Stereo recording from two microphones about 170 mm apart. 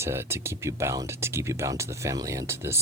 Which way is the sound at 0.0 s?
15° right (ahead or behind).